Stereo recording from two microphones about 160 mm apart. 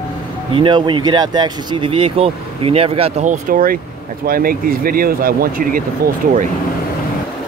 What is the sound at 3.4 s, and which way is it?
Speech, 60° right (ahead or behind).